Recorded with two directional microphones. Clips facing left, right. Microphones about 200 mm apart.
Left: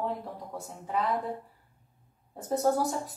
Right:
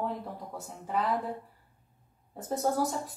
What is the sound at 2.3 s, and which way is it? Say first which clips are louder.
Speech: left 3 dB; centre (ahead or behind).